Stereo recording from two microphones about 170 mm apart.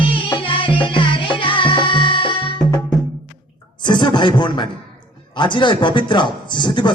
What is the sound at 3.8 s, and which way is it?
A man's voice, 25° left (ahead or behind).